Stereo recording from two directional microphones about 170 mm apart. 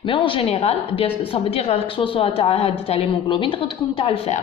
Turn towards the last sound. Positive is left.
turn(degrees=35)  # may be behind; listen again after turning